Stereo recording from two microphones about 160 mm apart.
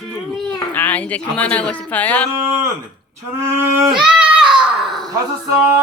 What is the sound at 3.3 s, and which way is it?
Speech, 15° right (ahead or behind).